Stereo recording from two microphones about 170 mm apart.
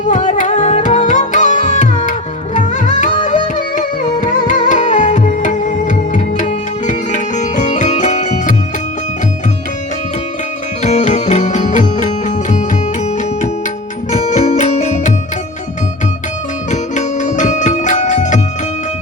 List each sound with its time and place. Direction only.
0.1 s music: 45° left (ahead or behind)
10.8 s music: 40° left (ahead or behind)
14.1 s music: 45° left (ahead or behind)
16.7 s music: 45° left (ahead or behind)